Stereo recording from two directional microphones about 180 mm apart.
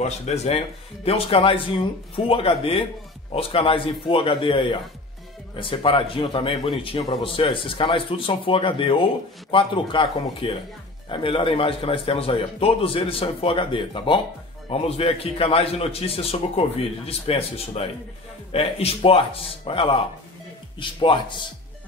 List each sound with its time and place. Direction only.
0.0 s a man's voice: 35° left (ahead or behind)